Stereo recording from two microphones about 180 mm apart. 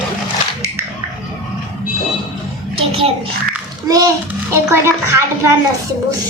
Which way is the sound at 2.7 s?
30° right (ahead or behind).